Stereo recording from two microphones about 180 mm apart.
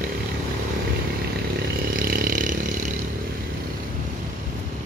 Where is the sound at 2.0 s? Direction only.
55° right (ahead or behind).